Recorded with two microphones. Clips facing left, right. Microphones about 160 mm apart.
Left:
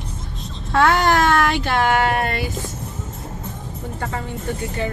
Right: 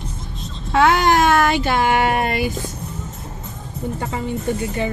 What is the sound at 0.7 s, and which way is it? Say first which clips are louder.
Speech: right 1 dB; 5° right (ahead or behind).